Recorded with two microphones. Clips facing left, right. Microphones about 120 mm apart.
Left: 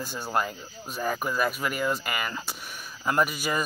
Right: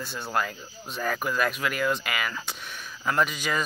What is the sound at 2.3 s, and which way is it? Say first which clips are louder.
Speech: even; 10° left (ahead or behind).